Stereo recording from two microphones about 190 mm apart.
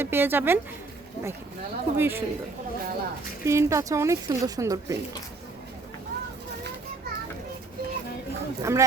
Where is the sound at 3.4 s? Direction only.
15° right (ahead or behind).